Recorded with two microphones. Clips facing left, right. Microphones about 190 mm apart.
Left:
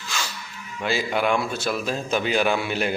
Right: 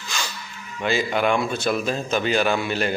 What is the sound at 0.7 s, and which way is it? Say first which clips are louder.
A man's voice: right 2 dB; 5° left (ahead or behind).